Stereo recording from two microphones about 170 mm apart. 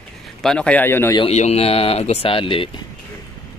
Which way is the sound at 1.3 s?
40° left (ahead or behind).